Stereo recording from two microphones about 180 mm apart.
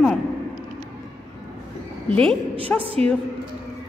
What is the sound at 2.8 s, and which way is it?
Speech, 35° right (ahead or behind).